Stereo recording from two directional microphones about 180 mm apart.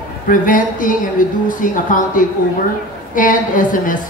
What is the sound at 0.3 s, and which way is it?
A woman's voice, 45° left (ahead or behind).